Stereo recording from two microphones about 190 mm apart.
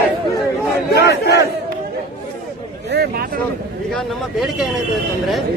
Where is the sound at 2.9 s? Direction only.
55° right (ahead or behind).